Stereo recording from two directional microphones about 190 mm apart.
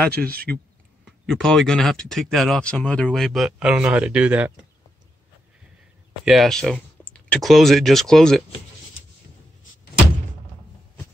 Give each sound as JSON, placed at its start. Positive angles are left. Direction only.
{"t": 0.1, "sound": "speech", "side_deg": -55}
{"t": 1.0, "sound": "speech", "side_deg": 0}
{"t": 6.2, "sound": "speech", "side_deg": 0}